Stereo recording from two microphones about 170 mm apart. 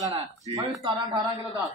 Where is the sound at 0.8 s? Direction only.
20° right (ahead or behind).